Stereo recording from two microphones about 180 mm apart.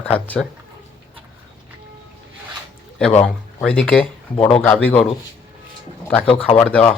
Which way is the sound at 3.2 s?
5° left (ahead or behind).